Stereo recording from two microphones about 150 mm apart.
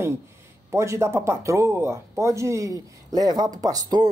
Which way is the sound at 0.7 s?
20° right (ahead or behind).